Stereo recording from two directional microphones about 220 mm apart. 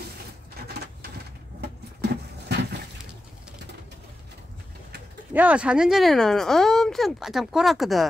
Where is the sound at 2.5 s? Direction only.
50° right (ahead or behind).